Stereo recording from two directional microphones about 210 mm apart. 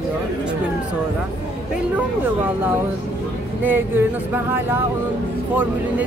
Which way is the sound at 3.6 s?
10° right (ahead or behind).